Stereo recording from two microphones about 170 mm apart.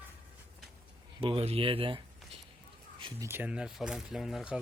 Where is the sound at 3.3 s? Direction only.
10° right (ahead or behind).